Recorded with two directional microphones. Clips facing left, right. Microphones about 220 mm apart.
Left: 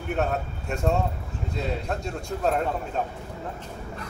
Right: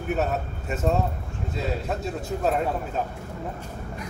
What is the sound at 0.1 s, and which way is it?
A man's voice, 5° right (ahead or behind).